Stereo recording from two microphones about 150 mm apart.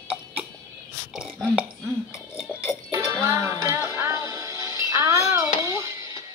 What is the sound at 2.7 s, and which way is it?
Music, 5° right (ahead or behind).